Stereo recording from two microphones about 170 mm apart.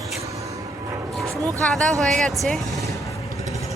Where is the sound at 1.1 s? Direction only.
Centre (ahead or behind).